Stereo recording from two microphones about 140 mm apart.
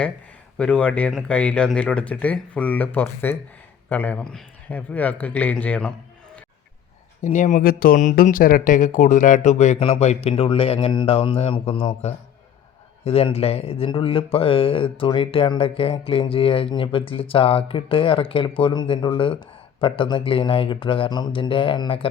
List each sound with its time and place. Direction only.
0.5 s speech: 10° left (ahead or behind)
7.3 s speech: 60° left (ahead or behind); by 22.1 s 40° left (ahead or behind)